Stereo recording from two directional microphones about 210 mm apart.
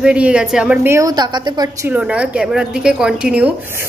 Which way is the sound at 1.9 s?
5° right (ahead or behind).